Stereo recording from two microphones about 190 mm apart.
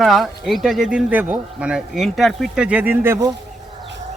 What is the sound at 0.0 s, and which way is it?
A man's voice, centre (ahead or behind).